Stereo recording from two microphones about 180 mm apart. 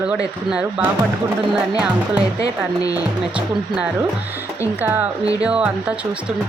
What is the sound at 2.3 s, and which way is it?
Speech, 20° left (ahead or behind).